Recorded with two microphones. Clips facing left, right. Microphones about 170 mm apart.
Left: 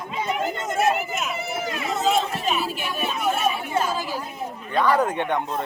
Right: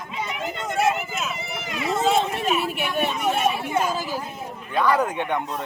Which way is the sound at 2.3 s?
65° right (ahead or behind).